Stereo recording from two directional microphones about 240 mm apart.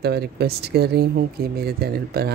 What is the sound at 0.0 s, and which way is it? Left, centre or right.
Speech, right.